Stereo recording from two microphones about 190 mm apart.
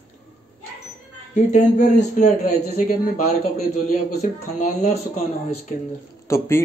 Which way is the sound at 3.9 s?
40° left (ahead or behind).